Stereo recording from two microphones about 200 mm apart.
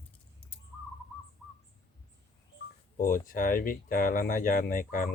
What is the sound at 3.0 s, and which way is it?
Speech, 45° left (ahead or behind).